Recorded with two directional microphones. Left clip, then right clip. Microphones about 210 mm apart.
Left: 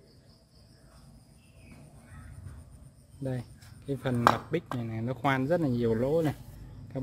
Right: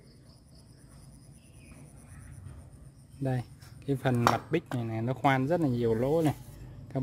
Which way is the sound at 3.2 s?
25° right (ahead or behind).